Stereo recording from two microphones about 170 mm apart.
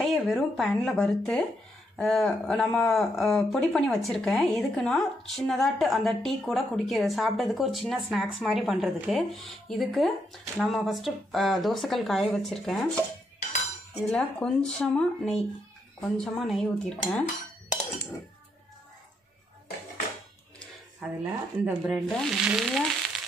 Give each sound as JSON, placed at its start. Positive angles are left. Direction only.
{"t": 0.0, "sound": "speech", "side_deg": 0}
{"t": 13.9, "sound": "speech", "side_deg": 0}
{"t": 21.0, "sound": "speech", "side_deg": 0}
{"t": 22.1, "sound": "frying", "side_deg": 0}